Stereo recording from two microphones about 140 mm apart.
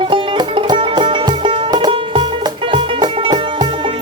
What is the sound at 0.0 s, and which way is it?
Music, 35° right (ahead or behind).